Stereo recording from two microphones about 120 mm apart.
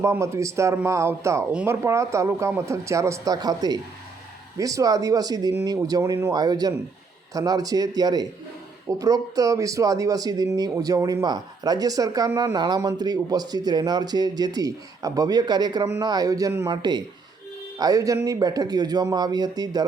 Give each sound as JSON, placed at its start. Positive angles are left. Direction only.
{"t": 0.0, "sound": "speech", "side_deg": -25}
{"t": 16.7, "sound": "speech", "side_deg": -35}